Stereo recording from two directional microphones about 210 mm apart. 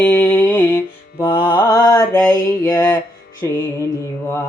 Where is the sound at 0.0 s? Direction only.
10° left (ahead or behind).